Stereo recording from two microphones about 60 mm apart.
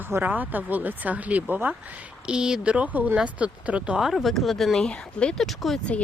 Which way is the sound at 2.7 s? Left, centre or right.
Right.